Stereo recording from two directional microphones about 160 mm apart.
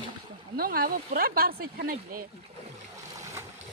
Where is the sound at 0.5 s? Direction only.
70° right (ahead or behind).